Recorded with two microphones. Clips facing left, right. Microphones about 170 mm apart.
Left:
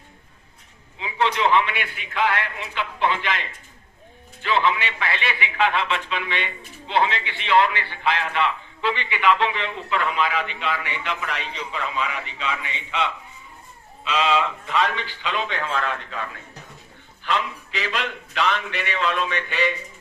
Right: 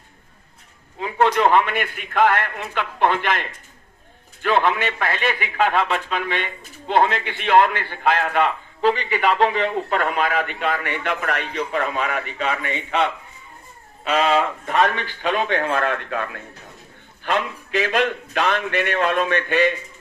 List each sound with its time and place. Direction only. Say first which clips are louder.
0.9 s a man's voice: right 5 dB; 50° right (ahead or behind)